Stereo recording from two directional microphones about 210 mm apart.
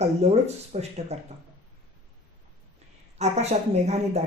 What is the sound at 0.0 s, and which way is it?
Speech, 30° right (ahead or behind).